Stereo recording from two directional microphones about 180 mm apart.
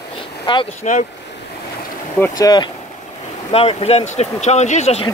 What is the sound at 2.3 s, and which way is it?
Speech, 20° left (ahead or behind).